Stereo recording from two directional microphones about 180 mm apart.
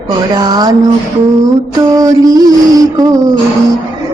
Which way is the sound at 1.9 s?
20° right (ahead or behind).